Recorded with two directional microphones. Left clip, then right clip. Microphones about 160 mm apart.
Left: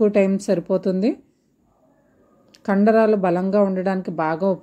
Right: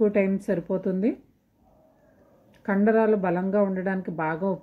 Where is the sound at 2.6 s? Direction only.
35° left (ahead or behind).